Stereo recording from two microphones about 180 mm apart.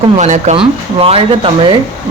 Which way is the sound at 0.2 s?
40° right (ahead or behind).